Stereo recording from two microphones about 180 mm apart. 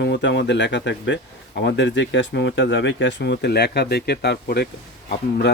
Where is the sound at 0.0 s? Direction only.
75° left (ahead or behind).